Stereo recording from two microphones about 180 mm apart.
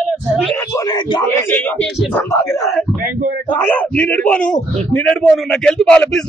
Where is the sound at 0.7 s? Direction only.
20° left (ahead or behind).